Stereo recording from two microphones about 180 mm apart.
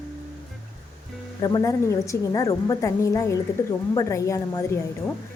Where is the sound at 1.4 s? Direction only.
20° left (ahead or behind).